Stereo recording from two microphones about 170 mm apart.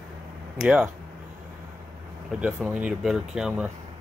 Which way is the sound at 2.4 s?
5° right (ahead or behind).